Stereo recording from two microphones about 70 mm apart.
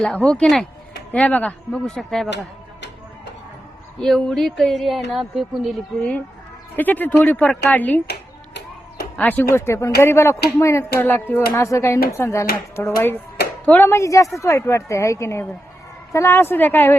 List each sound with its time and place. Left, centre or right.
0.0 s speech: centre
1.7 s speech: centre
4.0 s speech: centre
6.7 s speech: left
9.1 s speech: left
9.5 s speech: left
11.0 s speech: left
14.0 s speech: left
16.4 s speech: left